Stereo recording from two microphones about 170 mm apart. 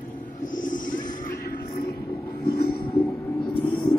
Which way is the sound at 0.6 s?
50° left (ahead or behind).